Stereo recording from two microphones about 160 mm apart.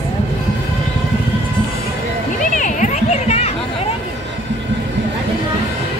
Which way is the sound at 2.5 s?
50° left (ahead or behind).